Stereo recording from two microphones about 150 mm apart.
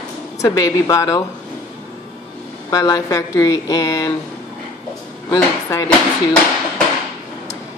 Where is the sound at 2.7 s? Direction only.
25° left (ahead or behind).